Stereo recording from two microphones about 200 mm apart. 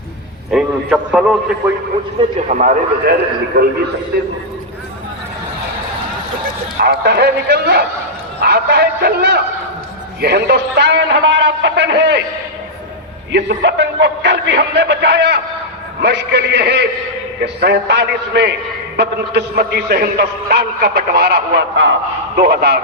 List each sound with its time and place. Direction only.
0.5 s a man's voice: 5° right (ahead or behind)
2.5 s speech: 40° right (ahead or behind)
3.6 s speech: 55° right (ahead or behind)
6.8 s a man's voice: 55° right (ahead or behind)
13.3 s a man's voice: 60° right (ahead or behind)